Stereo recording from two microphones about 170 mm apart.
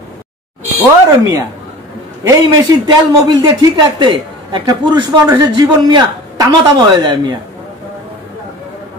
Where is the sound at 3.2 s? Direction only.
25° right (ahead or behind).